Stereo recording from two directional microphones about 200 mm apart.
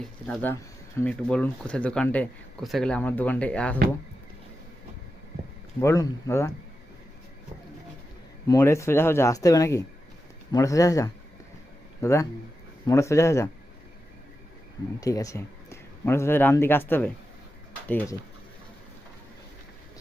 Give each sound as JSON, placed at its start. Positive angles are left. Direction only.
{"t": 0.0, "sound": "speech", "side_deg": 5}
{"t": 5.8, "sound": "speech", "side_deg": 15}
{"t": 8.4, "sound": "speech", "side_deg": 15}
{"t": 15.0, "sound": "speech", "side_deg": 15}